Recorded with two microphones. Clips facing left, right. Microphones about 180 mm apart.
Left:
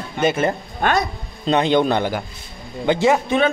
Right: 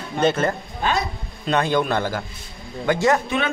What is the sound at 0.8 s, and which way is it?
Speech, 55° left (ahead or behind).